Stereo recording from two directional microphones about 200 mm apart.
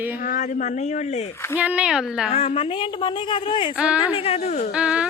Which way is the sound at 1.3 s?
10° left (ahead or behind).